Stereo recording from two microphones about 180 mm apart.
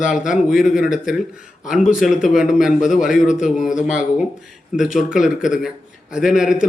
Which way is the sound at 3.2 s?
45° left (ahead or behind).